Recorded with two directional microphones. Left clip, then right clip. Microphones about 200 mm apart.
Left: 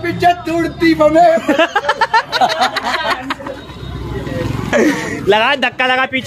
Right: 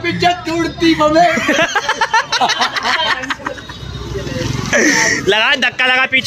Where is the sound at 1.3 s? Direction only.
10° right (ahead or behind).